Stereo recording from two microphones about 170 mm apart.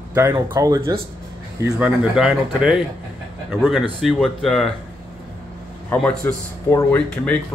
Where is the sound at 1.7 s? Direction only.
5° right (ahead or behind).